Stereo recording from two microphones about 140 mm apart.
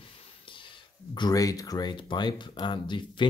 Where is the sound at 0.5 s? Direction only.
35° left (ahead or behind).